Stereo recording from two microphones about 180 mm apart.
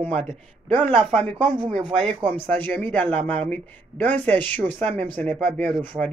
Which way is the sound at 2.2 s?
10° left (ahead or behind).